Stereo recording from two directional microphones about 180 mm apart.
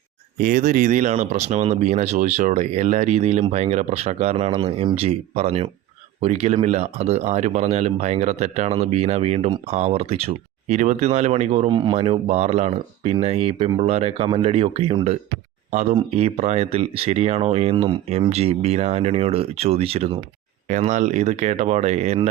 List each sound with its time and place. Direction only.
0.3 s speech: 50° right (ahead or behind)